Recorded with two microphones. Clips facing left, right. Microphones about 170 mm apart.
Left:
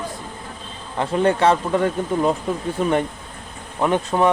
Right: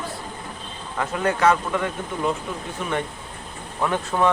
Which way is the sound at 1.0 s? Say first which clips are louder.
Left 5 dB; 30° left (ahead or behind).